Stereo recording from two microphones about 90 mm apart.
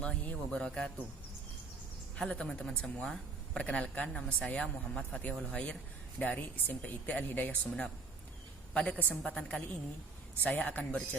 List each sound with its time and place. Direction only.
0.0 s speech: 10° left (ahead or behind)
2.1 s a woman's voice: 10° left (ahead or behind)